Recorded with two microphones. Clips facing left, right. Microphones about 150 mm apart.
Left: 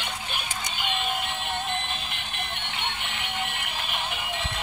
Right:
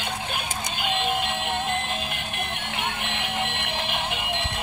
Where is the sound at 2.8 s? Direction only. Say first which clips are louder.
Right 5 dB; 65° right (ahead or behind).